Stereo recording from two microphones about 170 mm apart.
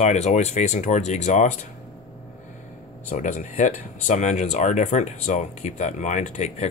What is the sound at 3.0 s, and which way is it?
Speech, 45° left (ahead or behind).